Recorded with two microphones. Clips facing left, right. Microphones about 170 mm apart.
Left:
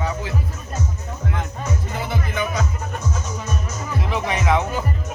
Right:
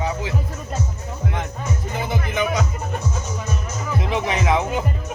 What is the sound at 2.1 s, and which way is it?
Music, 20° right (ahead or behind).